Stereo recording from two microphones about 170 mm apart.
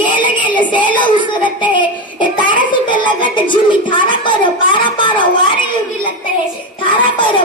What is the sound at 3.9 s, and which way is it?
A woman's voice, 30° left (ahead or behind).